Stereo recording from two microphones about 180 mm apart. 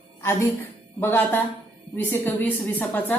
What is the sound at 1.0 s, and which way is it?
A woman's voice, 10° left (ahead or behind).